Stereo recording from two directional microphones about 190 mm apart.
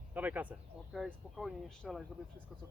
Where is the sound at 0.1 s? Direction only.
10° right (ahead or behind).